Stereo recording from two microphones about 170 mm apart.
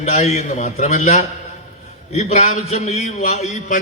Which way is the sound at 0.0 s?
40° left (ahead or behind).